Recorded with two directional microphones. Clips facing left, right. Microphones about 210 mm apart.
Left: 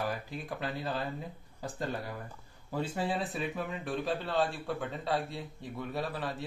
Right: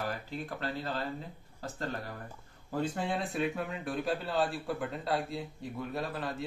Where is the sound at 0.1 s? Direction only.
10° left (ahead or behind).